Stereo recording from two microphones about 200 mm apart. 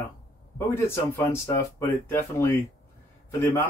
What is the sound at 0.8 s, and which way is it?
Speech, 10° left (ahead or behind).